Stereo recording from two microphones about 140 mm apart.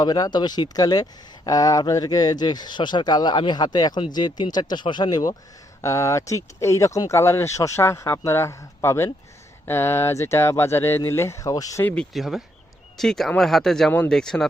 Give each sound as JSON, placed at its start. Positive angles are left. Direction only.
{"t": 0.0, "sound": "speech", "side_deg": 30}
{"t": 12.1, "sound": "speech", "side_deg": 0}